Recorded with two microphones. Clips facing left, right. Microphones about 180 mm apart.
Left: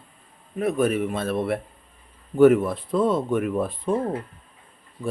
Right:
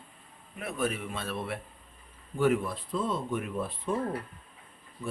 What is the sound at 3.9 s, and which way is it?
Speech, 30° left (ahead or behind).